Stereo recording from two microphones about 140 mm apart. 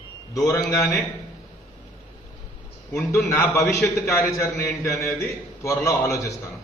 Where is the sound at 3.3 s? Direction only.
20° left (ahead or behind).